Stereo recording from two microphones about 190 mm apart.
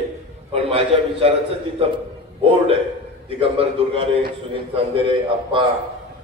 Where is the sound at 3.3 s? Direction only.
30° right (ahead or behind).